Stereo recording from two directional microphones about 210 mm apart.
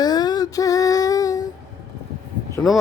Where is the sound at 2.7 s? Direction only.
Centre (ahead or behind).